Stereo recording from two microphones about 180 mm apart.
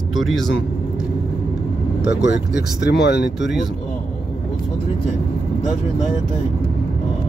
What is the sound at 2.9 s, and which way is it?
Speech, 70° left (ahead or behind).